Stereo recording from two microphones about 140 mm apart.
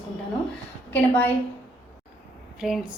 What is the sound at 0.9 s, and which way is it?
Speech, 10° left (ahead or behind).